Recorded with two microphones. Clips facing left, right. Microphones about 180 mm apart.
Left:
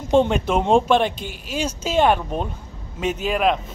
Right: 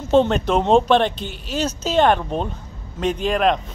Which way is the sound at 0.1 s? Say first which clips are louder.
Right 1 dB; 10° left (ahead or behind).